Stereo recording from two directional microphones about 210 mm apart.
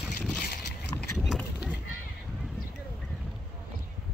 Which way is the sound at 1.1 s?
Centre (ahead or behind).